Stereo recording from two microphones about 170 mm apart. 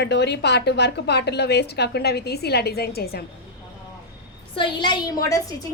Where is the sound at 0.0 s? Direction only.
90° left; by 3.2 s 70° left (ahead or behind).